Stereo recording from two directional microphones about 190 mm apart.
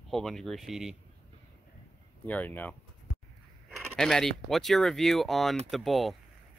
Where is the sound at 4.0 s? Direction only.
Centre (ahead or behind).